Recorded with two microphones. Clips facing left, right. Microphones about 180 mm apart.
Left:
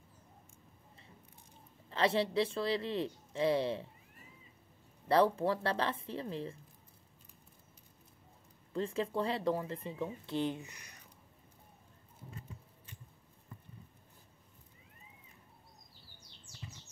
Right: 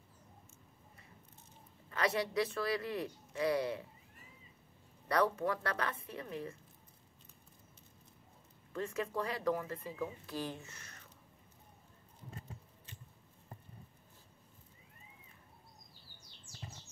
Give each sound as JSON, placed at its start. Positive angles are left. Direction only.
{"t": 1.9, "sound": "speech", "side_deg": 30}
{"t": 5.0, "sound": "speech", "side_deg": 30}
{"t": 8.7, "sound": "speech", "side_deg": 30}